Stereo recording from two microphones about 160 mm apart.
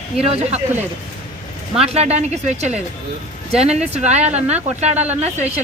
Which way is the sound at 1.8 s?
40° right (ahead or behind).